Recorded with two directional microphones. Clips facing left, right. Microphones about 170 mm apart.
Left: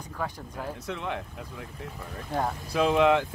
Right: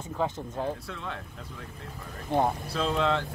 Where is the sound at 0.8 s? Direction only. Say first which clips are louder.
Left 5 dB; 20° left (ahead or behind).